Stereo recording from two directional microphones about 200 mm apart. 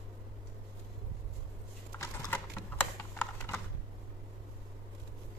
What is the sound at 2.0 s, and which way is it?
Typing, 10° left (ahead or behind).